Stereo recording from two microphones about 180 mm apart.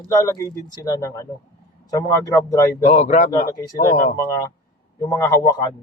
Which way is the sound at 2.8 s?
40° left (ahead or behind).